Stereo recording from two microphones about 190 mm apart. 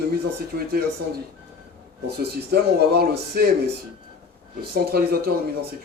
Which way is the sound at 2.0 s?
55° right (ahead or behind).